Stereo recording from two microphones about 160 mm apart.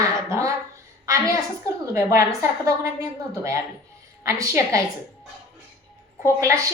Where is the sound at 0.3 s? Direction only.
20° right (ahead or behind).